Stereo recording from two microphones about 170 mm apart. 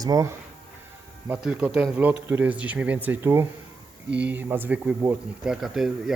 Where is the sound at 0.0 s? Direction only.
20° right (ahead or behind).